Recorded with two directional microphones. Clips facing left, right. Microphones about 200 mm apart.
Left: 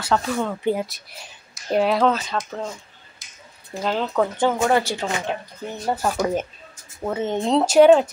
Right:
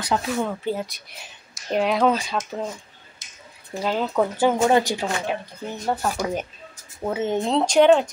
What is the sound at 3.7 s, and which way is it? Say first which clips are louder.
Speech: even; 5° right (ahead or behind).